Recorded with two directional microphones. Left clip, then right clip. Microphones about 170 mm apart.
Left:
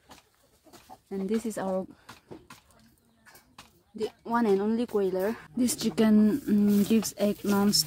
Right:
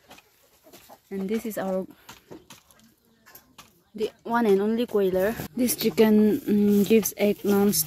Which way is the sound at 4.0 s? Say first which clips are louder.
Right 3 dB; 10° right (ahead or behind).